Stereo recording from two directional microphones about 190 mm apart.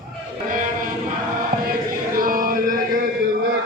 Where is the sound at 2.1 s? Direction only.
45° right (ahead or behind).